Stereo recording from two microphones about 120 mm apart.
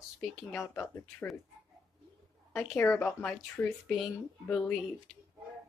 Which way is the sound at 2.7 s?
15° left (ahead or behind).